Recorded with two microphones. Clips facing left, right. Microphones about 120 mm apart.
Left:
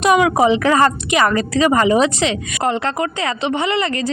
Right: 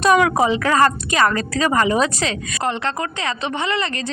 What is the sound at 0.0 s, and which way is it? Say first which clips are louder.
A woman's voice: left 2 dB; 15° left (ahead or behind).